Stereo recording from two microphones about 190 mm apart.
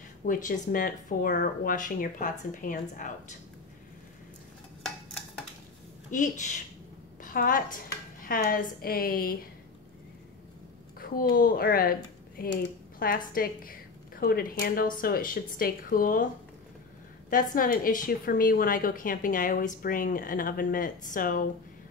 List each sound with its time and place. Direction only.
0.2 s a woman's voice: 45° left (ahead or behind)
6.0 s a woman's voice: 40° left (ahead or behind)
11.0 s a woman's voice: 50° left (ahead or behind)
17.3 s a woman's voice: 45° left (ahead or behind)